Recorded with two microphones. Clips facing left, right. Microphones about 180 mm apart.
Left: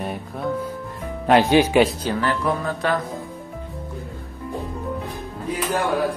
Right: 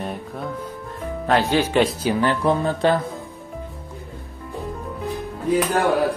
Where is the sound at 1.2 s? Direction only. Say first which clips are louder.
Left 4 dB; 15° left (ahead or behind).